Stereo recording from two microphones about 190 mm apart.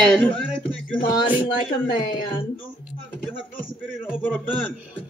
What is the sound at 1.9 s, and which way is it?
Speech, 45° left (ahead or behind).